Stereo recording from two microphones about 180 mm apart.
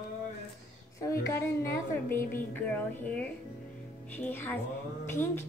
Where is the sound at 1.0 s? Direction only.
15° left (ahead or behind).